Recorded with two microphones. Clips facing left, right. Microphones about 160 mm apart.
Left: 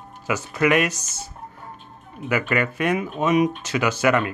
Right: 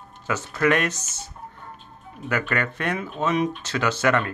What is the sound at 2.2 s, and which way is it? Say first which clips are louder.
Speech: left 3 dB; 10° left (ahead or behind).